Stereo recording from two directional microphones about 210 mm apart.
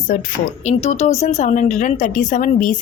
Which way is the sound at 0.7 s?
30° left (ahead or behind).